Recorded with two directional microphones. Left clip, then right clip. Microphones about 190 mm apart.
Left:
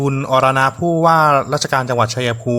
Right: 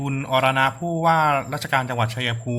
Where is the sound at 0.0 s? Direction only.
45° left (ahead or behind).